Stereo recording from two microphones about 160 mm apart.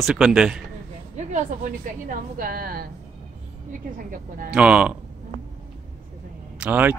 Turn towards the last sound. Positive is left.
turn(degrees=-10)  # may be behind; listen again after turning